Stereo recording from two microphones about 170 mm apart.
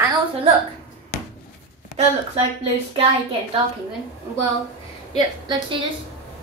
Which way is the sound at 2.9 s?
35° right (ahead or behind).